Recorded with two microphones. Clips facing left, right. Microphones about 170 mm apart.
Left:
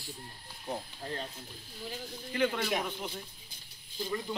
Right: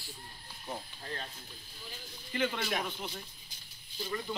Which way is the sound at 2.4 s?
5° left (ahead or behind).